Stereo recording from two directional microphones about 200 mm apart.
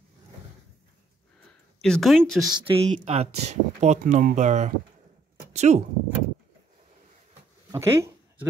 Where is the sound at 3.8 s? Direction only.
35° right (ahead or behind).